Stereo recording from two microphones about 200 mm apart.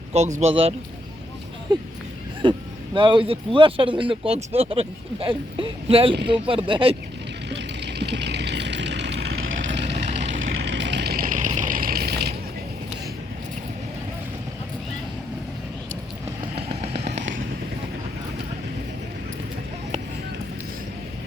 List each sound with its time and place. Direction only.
0.1 s speech: 35° right (ahead or behind)
1.7 s speech: 20° right (ahead or behind)
7.5 s vehicle: 55° right (ahead or behind)
10.7 s vehicle: 60° right (ahead or behind)
16.6 s vehicle: 30° right (ahead or behind)